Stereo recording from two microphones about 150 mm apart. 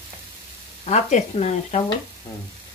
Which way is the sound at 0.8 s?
45° left (ahead or behind).